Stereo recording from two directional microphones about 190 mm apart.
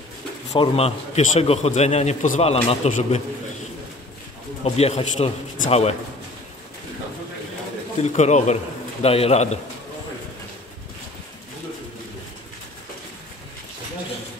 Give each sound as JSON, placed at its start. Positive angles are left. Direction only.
{"t": 0.5, "sound": "a man's voice", "side_deg": 30}
{"t": 4.6, "sound": "a man's voice", "side_deg": 35}
{"t": 8.0, "sound": "a man's voice", "side_deg": 40}